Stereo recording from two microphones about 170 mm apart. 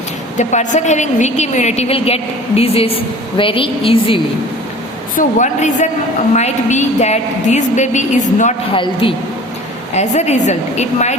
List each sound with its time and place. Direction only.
0.3 s a woman's voice: 45° left (ahead or behind)
5.1 s a woman's voice: 45° left (ahead or behind)
8.7 s a woman's voice: 30° left (ahead or behind)
9.9 s a woman's voice: 40° left (ahead or behind)